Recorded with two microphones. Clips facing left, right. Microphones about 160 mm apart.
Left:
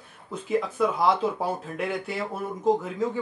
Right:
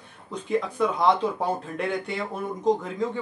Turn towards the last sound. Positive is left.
turn(degrees=5)  # may be behind; listen again after turning